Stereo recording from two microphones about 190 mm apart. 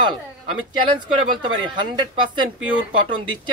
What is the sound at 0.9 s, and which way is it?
Speech, 25° right (ahead or behind).